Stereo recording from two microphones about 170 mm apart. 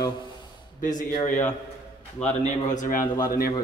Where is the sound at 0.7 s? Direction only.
50° left (ahead or behind).